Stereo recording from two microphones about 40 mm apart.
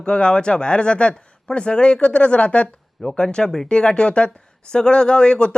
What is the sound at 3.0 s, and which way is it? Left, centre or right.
Speech, centre.